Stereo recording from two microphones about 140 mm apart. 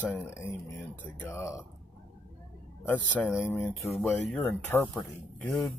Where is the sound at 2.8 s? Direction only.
10° left (ahead or behind).